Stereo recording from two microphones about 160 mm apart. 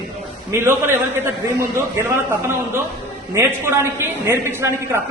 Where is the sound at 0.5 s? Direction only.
15° right (ahead or behind).